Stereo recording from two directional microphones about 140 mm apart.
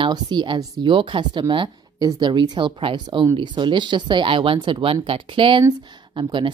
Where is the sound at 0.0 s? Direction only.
35° right (ahead or behind).